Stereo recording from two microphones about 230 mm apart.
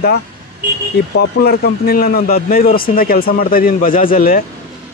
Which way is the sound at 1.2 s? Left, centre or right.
Left.